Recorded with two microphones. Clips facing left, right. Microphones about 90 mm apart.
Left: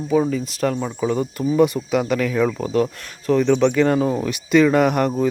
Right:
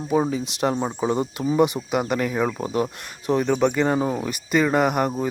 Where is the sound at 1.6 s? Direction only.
10° right (ahead or behind).